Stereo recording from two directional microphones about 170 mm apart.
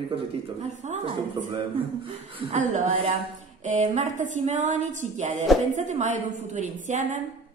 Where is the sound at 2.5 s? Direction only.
45° right (ahead or behind).